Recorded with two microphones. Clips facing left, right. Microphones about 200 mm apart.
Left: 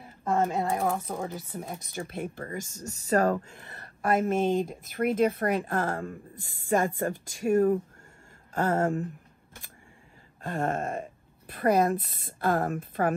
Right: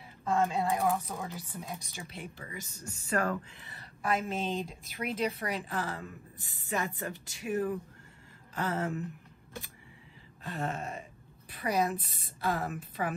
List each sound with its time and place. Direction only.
0.0 s speech: 50° left (ahead or behind)
10.4 s speech: 50° left (ahead or behind)